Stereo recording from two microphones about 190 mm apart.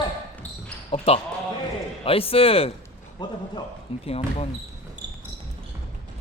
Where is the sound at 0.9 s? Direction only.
30° left (ahead or behind).